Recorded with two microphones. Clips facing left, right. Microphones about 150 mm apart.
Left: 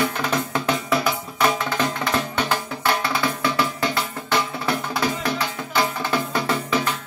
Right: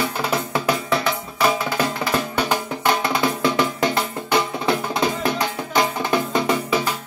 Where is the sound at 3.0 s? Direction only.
20° right (ahead or behind).